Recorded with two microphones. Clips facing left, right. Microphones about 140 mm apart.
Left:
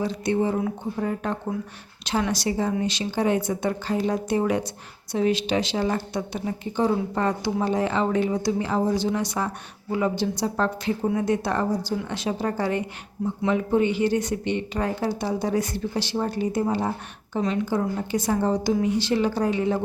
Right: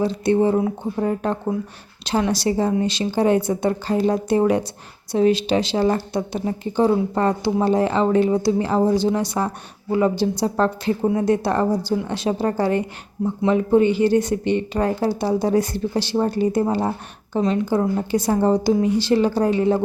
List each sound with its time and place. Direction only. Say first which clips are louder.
0.0 s speech: right 6 dB; 30° right (ahead or behind)